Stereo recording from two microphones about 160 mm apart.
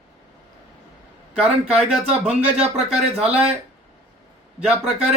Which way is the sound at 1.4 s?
5° right (ahead or behind).